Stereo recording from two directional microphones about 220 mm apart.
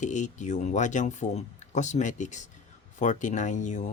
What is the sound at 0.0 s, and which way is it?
Speech, 35° left (ahead or behind).